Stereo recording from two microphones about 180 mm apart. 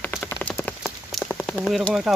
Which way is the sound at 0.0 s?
10° left (ahead or behind).